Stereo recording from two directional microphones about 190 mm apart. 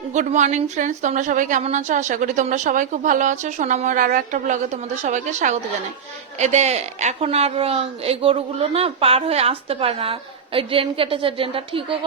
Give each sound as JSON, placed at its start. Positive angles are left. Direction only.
{"t": 0.1, "sound": "a woman's voice", "side_deg": -40}